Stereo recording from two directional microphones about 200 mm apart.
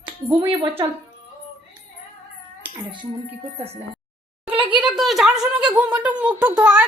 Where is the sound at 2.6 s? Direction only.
25° right (ahead or behind).